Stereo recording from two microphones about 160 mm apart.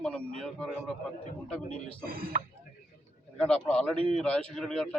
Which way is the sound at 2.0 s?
65° right (ahead or behind).